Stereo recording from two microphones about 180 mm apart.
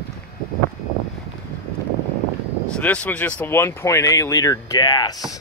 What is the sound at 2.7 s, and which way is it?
Speech, 5° left (ahead or behind).